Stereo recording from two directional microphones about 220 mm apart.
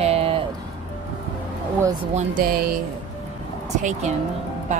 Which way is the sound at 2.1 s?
40° right (ahead or behind).